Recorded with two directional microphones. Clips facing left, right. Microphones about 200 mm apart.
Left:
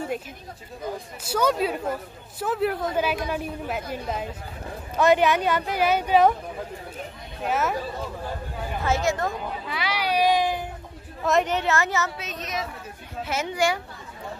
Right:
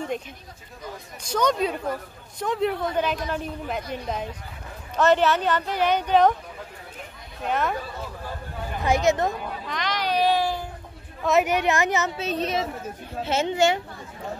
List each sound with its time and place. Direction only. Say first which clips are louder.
1.2 s a man's voice: even; 5° left (ahead or behind)
7.4 s a woman's voice: even; 5° left (ahead or behind)
8.8 s speech: right 3 dB; 15° right (ahead or behind)
9.4 s speech: even; 5° left (ahead or behind)
11.2 s a woman's voice: right 2 dB; 5° right (ahead or behind)
12.3 s a woman's voice: right 6 dB; 30° right (ahead or behind)